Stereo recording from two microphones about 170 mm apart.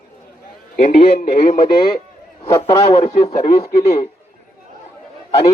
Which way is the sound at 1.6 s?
25° left (ahead or behind).